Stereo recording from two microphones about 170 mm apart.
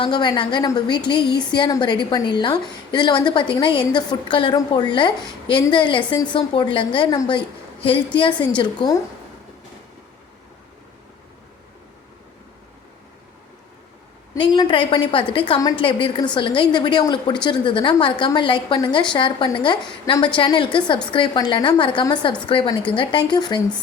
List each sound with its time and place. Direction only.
0.0 s a woman's voice: 25° left (ahead or behind)
14.3 s a woman's voice: 25° left (ahead or behind)